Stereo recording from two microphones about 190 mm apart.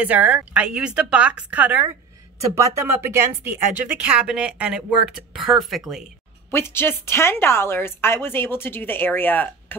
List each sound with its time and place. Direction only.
0.0 s speech: 10° right (ahead or behind)
6.5 s a woman's voice: 10° left (ahead or behind)